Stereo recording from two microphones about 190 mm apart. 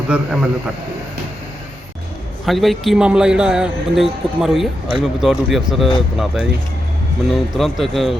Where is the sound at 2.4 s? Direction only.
Centre (ahead or behind).